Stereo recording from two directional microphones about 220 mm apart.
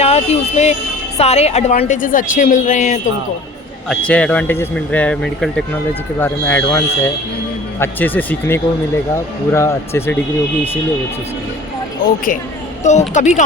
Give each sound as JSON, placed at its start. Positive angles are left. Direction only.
{"t": 0.0, "sound": "speech", "side_deg": 30}
{"t": 3.8, "sound": "a man's voice", "side_deg": 5}
{"t": 12.8, "sound": "speech", "side_deg": 30}